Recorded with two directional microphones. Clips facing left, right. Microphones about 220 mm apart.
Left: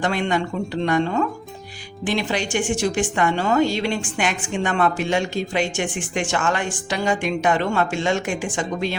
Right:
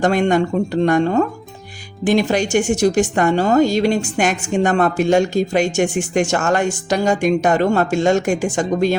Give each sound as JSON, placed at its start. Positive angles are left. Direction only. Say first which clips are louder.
{"t": 0.0, "sound": "a woman's voice", "louder": "right 7 dB", "side_deg": -45}